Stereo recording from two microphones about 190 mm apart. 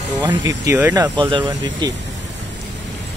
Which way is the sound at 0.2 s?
20° right (ahead or behind).